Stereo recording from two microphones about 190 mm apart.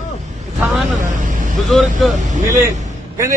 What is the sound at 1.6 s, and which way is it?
Speech, centre (ahead or behind).